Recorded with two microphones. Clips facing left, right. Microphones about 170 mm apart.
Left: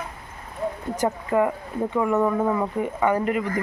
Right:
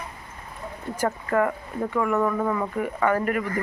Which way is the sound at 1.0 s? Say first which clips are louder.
Left 1 dB; 15° left (ahead or behind).